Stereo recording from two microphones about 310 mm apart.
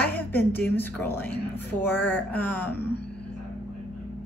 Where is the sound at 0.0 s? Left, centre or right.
Centre.